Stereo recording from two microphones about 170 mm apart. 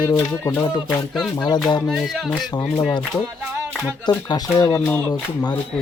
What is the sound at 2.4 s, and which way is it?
Speech, 25° left (ahead or behind).